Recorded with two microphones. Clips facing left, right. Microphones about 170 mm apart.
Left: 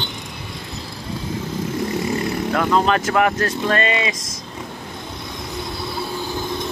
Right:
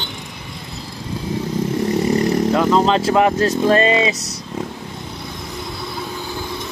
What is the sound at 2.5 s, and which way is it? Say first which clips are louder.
Speech: even; 20° right (ahead or behind).